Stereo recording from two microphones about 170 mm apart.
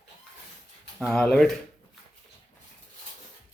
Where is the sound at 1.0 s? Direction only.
5° left (ahead or behind).